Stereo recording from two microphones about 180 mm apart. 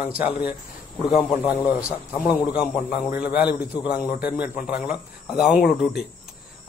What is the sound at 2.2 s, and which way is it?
A man's voice, 5° right (ahead or behind).